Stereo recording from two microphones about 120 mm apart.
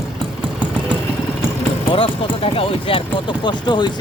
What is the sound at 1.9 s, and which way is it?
Speech, 50° left (ahead or behind).